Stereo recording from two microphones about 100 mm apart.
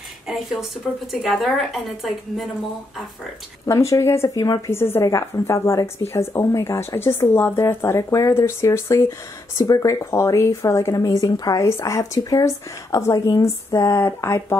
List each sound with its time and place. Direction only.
0.3 s a woman's voice: centre (ahead or behind)
3.6 s speech: 30° left (ahead or behind)